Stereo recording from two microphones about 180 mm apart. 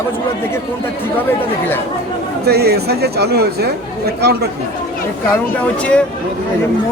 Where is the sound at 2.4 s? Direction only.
60° right (ahead or behind).